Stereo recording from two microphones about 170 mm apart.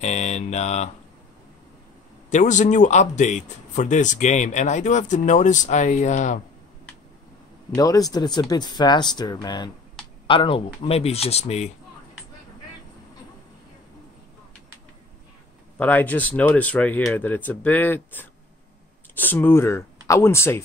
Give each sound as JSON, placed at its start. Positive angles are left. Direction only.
{"t": 0.0, "sound": "speech", "side_deg": 40}
{"t": 2.3, "sound": "speech", "side_deg": 45}
{"t": 7.7, "sound": "speech", "side_deg": 20}
{"t": 15.8, "sound": "speech", "side_deg": 10}